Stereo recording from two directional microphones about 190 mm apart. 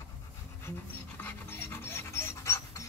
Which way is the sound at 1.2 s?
10° left (ahead or behind).